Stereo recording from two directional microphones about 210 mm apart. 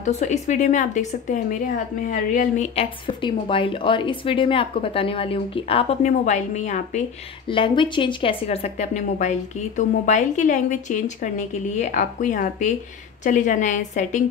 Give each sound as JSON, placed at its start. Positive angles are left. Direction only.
{"t": 0.0, "sound": "a woman's voice", "side_deg": 35}
{"t": 7.4, "sound": "a woman's voice", "side_deg": 25}